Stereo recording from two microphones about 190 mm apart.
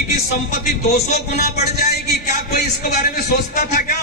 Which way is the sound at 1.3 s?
55° left (ahead or behind).